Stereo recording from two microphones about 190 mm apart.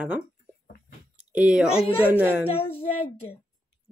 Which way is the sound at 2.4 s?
30° left (ahead or behind).